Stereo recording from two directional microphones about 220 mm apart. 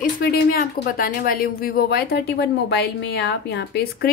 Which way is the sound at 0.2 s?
45° left (ahead or behind).